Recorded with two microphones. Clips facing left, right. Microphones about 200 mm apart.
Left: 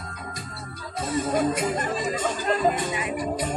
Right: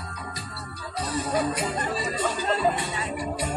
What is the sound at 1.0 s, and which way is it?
Music, 50° left (ahead or behind).